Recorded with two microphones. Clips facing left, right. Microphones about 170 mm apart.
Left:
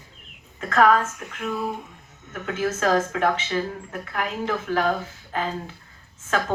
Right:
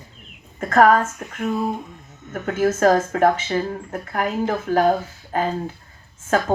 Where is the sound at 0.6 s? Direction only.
45° right (ahead or behind).